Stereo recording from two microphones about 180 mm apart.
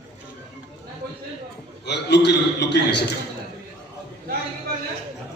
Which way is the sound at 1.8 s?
70° left (ahead or behind).